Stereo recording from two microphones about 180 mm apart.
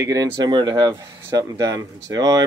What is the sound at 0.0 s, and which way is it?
Speech, 20° right (ahead or behind).